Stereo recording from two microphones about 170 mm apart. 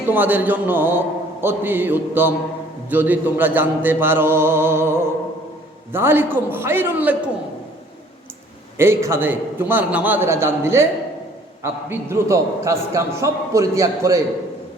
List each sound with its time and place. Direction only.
0.1 s a man's voice: 10° right (ahead or behind)
8.8 s a man's voice: 15° right (ahead or behind)